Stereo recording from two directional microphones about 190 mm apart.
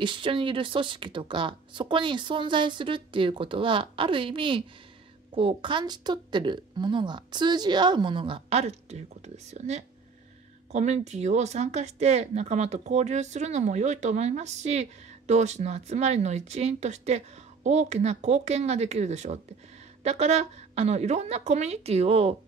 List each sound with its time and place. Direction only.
0.0 s speech: 25° right (ahead or behind)